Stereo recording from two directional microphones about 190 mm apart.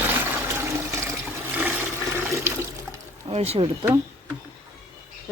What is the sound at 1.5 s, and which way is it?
Toilet flush, 10° right (ahead or behind).